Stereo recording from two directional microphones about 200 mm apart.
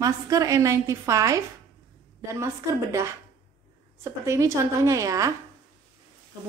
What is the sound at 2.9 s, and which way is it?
A woman's voice, 15° right (ahead or behind).